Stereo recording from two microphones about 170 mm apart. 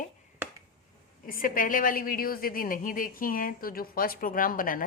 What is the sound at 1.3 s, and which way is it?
A woman's voice, 55° left (ahead or behind).